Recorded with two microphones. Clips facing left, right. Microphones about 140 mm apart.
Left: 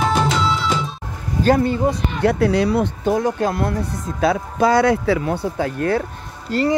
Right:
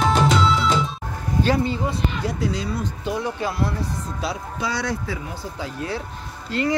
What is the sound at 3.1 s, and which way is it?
Speech, 45° left (ahead or behind).